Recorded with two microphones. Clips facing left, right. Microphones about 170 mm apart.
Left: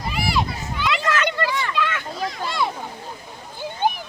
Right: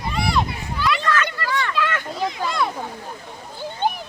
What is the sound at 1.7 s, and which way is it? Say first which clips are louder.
Children playing: right 1 dB; centre (ahead or behind).